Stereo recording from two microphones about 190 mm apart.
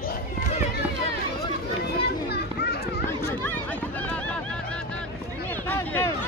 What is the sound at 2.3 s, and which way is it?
Children playing, 55° left (ahead or behind).